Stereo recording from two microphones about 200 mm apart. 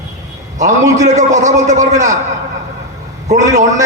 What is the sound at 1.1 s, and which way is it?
Speech, 35° right (ahead or behind).